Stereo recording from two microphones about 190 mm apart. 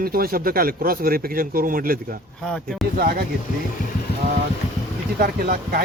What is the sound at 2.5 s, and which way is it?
Speech, 5° left (ahead or behind).